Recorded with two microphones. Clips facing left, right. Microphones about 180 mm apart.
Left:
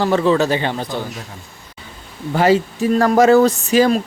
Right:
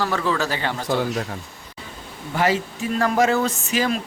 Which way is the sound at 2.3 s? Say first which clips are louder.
Left 7 dB; 30° left (ahead or behind).